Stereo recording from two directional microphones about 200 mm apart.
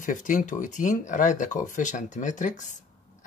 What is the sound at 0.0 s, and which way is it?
Speech, 40° left (ahead or behind).